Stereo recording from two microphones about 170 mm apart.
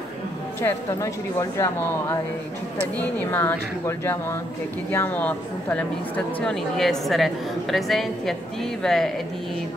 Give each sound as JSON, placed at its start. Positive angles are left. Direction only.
{"t": 0.6, "sound": "a woman's voice", "side_deg": 15}